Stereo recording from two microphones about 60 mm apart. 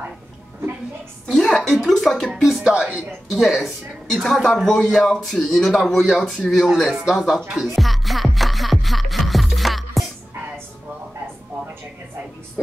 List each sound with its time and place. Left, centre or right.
1.2 s speech: centre
2.7 s speech: centre
3.3 s speech: centre
5.9 s speech: centre
7.6 s music: centre